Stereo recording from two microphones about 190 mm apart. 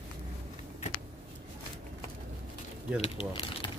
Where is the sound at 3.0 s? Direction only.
30° left (ahead or behind).